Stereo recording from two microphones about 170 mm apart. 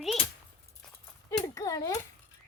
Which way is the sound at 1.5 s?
20° left (ahead or behind).